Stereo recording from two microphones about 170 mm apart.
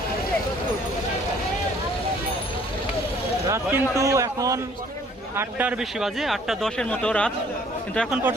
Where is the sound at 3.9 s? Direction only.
20° right (ahead or behind).